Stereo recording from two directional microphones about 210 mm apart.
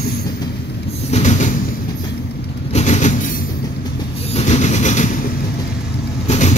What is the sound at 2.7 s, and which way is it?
Train, 35° left (ahead or behind).